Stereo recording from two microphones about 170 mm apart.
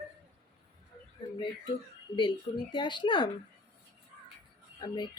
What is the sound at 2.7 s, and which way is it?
Speech, 30° left (ahead or behind).